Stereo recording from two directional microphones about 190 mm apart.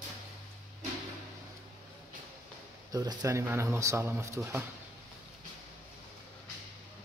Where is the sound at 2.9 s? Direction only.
20° right (ahead or behind).